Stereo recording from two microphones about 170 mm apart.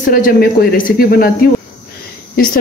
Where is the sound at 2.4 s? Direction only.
60° left (ahead or behind).